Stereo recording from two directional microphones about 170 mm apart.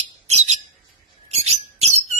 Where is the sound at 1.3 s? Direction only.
40° right (ahead or behind).